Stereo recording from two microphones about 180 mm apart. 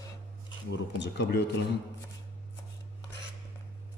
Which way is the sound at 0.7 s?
75° left (ahead or behind).